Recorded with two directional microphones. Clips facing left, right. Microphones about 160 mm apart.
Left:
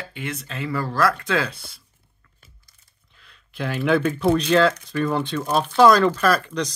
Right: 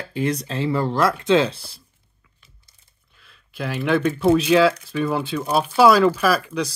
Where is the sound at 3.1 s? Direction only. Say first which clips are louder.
Even; centre (ahead or behind).